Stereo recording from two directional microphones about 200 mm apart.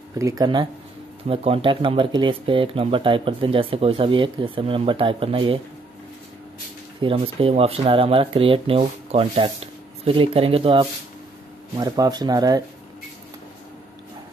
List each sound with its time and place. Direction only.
0.2 s speech: 20° right (ahead or behind)
7.0 s speech: 25° right (ahead or behind)